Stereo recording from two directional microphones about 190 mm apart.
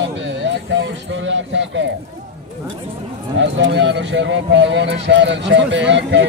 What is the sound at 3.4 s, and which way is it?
Speech, 70° right (ahead or behind).